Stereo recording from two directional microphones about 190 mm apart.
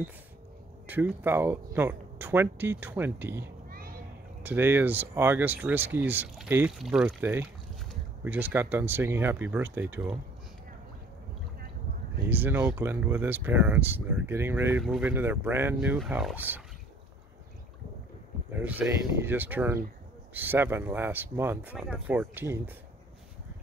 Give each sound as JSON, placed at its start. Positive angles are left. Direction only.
{"t": 0.8, "sound": "speech", "side_deg": -10}
{"t": 3.6, "sound": "children playing", "side_deg": -50}
{"t": 4.4, "sound": "speech", "side_deg": -10}
{"t": 12.3, "sound": "speech", "side_deg": -10}
{"t": 18.5, "sound": "speech", "side_deg": -10}